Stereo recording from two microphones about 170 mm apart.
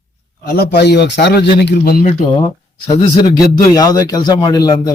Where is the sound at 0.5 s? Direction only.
70° left (ahead or behind).